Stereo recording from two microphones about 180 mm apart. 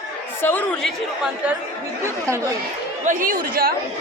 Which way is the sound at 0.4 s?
10° left (ahead or behind).